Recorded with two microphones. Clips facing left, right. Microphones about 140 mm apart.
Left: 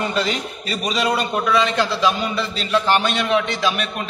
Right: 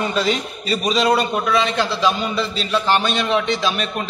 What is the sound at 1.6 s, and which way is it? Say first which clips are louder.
Speech: left 1 dB; 25° right (ahead or behind).